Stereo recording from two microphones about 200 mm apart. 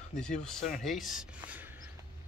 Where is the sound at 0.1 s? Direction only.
5° left (ahead or behind).